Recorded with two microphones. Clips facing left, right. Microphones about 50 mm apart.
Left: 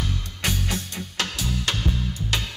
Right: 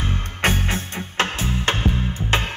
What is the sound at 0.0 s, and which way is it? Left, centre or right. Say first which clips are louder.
Music: right 6 dB; right.